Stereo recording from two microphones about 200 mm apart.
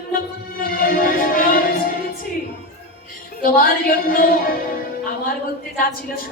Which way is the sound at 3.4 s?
45° left (ahead or behind).